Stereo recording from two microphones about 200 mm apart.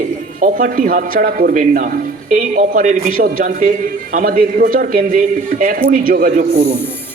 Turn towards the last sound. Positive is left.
turn(degrees=-40)  # may be behind; listen again after turning